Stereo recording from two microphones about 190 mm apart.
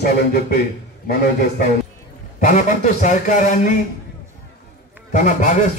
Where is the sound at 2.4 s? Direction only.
40° left (ahead or behind).